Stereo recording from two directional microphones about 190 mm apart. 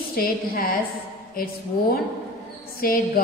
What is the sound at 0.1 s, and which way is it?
Speech, 50° left (ahead or behind).